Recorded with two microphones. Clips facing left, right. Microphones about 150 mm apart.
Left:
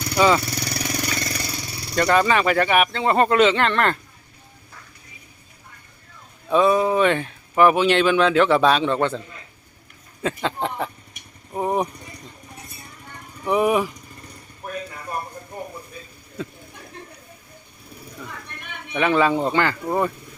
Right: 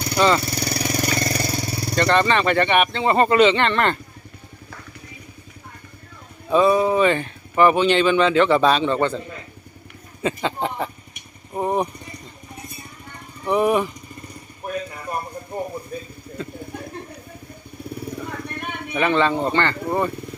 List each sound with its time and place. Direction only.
0.2 s speech: 5° left (ahead or behind)
0.5 s vehicle: 30° right (ahead or behind)
2.0 s speech: 5° left (ahead or behind)
6.5 s speech: centre (ahead or behind)
10.2 s speech: centre (ahead or behind)
13.4 s speech: centre (ahead or behind)
16.4 s a sound: centre (ahead or behind)
17.8 s vehicle: 65° right (ahead or behind)
18.9 s speech: 5° left (ahead or behind)